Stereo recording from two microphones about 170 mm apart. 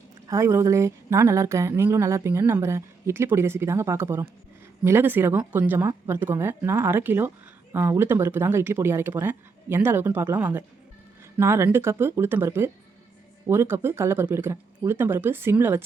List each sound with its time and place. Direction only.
0.3 s speech: 15° right (ahead or behind)